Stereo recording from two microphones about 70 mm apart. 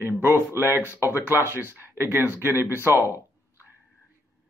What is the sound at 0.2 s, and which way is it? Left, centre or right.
Speech, right.